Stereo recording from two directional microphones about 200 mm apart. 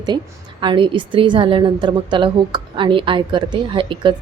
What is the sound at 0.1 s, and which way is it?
A woman's voice, 25° right (ahead or behind).